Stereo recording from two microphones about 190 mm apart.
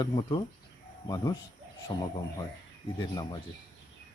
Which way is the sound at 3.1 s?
20° left (ahead or behind).